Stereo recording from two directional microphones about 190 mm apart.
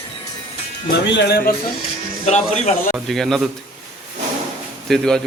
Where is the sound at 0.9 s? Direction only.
55° left (ahead or behind).